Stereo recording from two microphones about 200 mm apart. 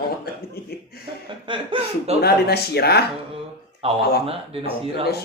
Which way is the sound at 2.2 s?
50° left (ahead or behind).